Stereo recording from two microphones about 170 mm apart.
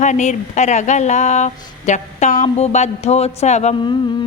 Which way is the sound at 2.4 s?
40° left (ahead or behind).